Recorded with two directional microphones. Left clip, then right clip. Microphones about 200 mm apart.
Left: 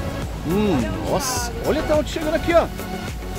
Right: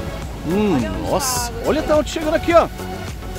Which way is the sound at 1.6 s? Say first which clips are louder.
Right 3 dB; 25° right (ahead or behind).